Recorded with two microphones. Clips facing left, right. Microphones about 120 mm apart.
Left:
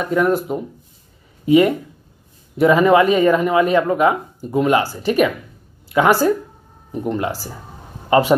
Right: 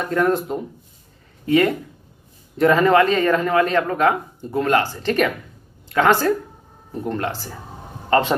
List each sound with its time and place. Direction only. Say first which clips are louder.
0.0 s speech: left 2 dB; 5° left (ahead or behind)
1.4 s a man's voice: left 4 dB; 15° left (ahead or behind)